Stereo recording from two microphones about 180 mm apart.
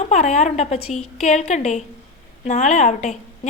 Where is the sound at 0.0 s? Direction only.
40° left (ahead or behind).